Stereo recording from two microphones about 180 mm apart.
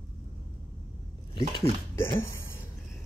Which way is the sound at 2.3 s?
15° left (ahead or behind).